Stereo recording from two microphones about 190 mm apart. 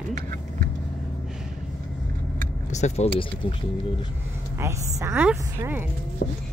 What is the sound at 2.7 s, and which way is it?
Speech, 35° left (ahead or behind).